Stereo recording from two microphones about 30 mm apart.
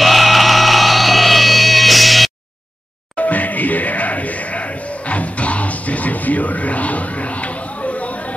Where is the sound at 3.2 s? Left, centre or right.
Left.